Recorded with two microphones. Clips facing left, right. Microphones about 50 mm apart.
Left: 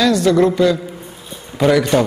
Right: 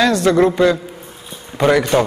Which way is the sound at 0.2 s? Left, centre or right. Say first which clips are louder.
Even; right.